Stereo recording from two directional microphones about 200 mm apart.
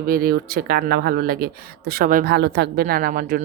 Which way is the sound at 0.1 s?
45° right (ahead or behind).